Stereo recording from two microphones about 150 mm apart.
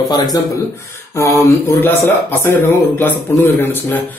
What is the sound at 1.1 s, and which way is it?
A man's voice, 20° left (ahead or behind).